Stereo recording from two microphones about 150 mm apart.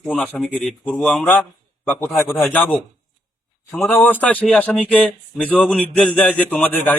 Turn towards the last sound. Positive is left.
turn(degrees=10)  # may be behind; listen again after turning